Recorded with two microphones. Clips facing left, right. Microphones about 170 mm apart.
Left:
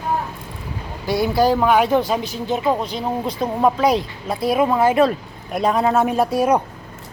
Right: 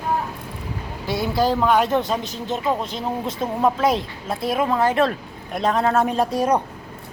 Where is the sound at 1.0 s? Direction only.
Centre (ahead or behind).